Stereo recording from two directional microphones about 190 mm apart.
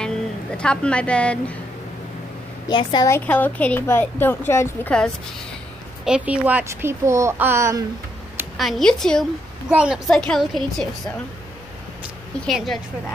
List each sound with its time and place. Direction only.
0.6 s a woman's voice: 5° left (ahead or behind)
2.7 s a woman's voice: 20° left (ahead or behind)
3.3 s a woman's voice: 10° left (ahead or behind)
6.0 s a woman's voice: 5° right (ahead or behind)
8.5 s a woman's voice: centre (ahead or behind)
12.0 s a sound: centre (ahead or behind)